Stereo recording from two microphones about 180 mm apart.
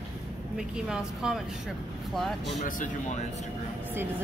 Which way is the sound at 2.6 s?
40° left (ahead or behind).